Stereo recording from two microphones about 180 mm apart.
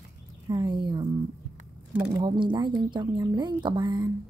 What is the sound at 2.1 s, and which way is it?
Speech, 25° right (ahead or behind).